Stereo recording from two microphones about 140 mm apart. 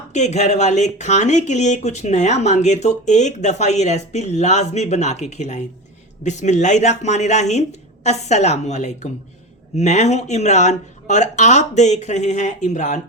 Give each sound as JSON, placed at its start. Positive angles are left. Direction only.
{"t": 0.1, "sound": "a woman's voice", "side_deg": 55}